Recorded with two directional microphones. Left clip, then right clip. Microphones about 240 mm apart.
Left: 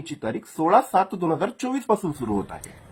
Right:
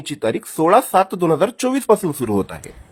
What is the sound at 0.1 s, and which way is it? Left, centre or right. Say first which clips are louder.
Speech: right 9 dB; right.